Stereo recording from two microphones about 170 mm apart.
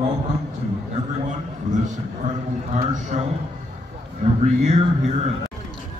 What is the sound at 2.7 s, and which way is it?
A man's voice, 45° right (ahead or behind).